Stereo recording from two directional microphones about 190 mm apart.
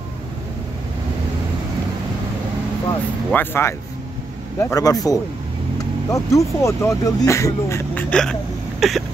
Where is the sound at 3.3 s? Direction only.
10° left (ahead or behind).